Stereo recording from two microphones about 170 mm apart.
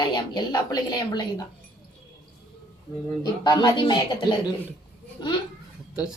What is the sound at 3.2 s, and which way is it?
A woman's voice, 25° left (ahead or behind).